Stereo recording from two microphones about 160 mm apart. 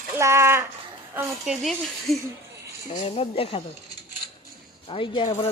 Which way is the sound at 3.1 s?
40° left (ahead or behind).